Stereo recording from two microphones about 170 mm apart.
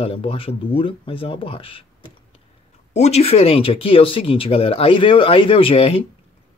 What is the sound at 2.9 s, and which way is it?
Speech, 40° left (ahead or behind).